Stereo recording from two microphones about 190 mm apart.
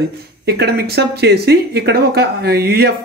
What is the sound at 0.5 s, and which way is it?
Speech, 55° right (ahead or behind).